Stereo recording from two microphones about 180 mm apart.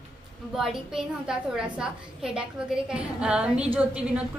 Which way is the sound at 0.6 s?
5° right (ahead or behind).